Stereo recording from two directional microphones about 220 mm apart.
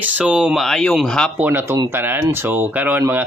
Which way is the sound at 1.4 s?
10° right (ahead or behind).